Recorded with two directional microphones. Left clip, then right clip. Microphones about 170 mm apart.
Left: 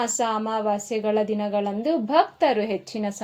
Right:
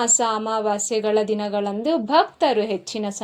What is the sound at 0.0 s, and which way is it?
A woman's voice, 25° right (ahead or behind).